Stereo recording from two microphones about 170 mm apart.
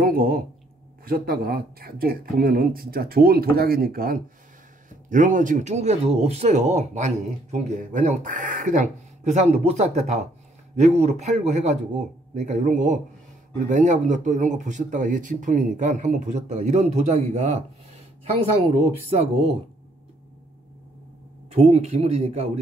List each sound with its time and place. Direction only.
0.0 s a sound: 60° right (ahead or behind)
1.0 s speech: 60° right (ahead or behind)
5.1 s speech: 50° right (ahead or behind)
21.5 s speech: 40° right (ahead or behind)